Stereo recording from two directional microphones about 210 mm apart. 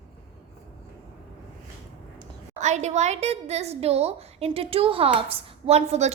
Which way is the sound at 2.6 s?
35° right (ahead or behind).